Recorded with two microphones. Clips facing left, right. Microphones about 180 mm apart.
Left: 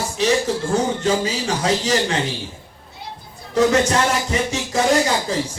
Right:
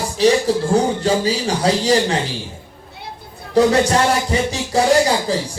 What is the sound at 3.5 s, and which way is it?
Speech, 35° right (ahead or behind).